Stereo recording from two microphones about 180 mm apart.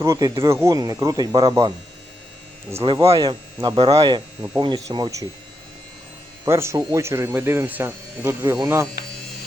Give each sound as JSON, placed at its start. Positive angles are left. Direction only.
{"t": 0.0, "sound": "speech", "side_deg": -20}
{"t": 2.8, "sound": "speech", "side_deg": -20}
{"t": 6.4, "sound": "speech", "side_deg": -15}